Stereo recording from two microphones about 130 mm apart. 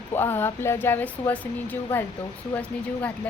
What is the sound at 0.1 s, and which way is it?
Speech, 15° left (ahead or behind).